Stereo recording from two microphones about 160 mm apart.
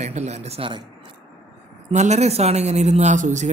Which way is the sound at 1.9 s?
45° right (ahead or behind).